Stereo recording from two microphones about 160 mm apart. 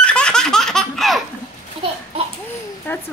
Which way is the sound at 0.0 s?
5° left (ahead or behind).